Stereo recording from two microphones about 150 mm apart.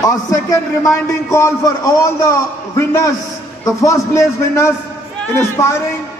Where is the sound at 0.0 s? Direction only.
25° left (ahead or behind).